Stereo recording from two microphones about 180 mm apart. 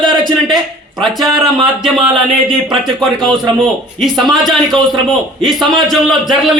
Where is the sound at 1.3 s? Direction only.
20° right (ahead or behind).